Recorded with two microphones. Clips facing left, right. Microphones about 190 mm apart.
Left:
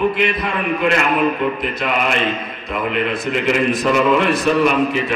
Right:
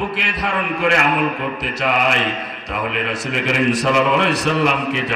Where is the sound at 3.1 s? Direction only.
85° right.